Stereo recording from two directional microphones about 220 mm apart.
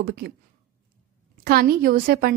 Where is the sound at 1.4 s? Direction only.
45° right (ahead or behind).